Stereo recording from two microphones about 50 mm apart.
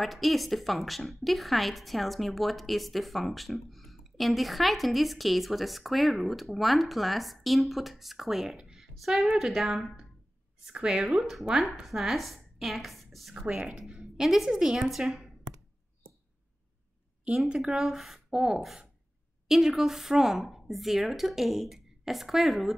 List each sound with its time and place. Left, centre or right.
0.0 s a woman's voice: centre
10.6 s a woman's voice: centre
13.6 s a woman's voice: centre
13.9 s a woman's voice: centre
17.6 s a woman's voice: centre